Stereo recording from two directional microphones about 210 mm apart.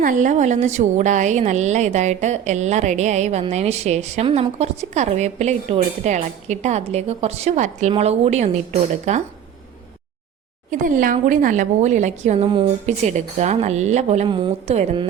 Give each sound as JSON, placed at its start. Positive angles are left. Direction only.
{"t": 0.0, "sound": "a woman's voice", "side_deg": -35}
{"t": 10.7, "sound": "a woman's voice", "side_deg": -40}